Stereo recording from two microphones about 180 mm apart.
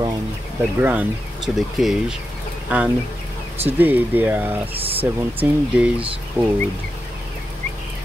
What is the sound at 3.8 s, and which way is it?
Speech, 10° right (ahead or behind).